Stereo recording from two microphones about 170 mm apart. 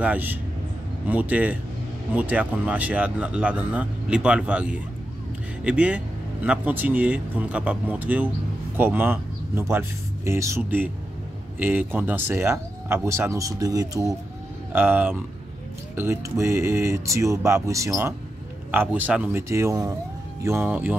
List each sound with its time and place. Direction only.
0.0 s speech: 10° right (ahead or behind)